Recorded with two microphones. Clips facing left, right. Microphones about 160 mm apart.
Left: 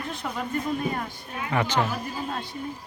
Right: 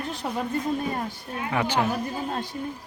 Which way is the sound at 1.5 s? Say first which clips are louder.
Even; 10° right (ahead or behind).